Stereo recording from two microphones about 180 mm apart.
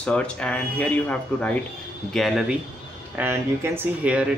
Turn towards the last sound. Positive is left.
turn(degrees=-5)  # may be behind; listen again after turning